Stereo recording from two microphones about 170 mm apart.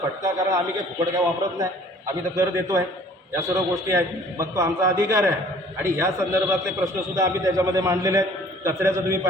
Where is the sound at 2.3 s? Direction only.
20° right (ahead or behind).